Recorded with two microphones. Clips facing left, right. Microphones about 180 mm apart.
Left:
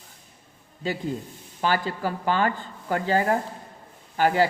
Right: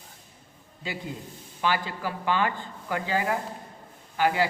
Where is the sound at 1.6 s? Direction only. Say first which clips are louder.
Left 3 dB; 45° left (ahead or behind).